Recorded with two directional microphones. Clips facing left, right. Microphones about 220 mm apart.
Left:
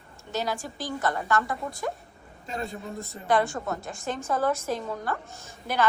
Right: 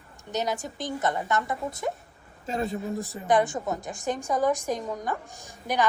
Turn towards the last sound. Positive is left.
turn(degrees=-15)  # may be behind; listen again after turning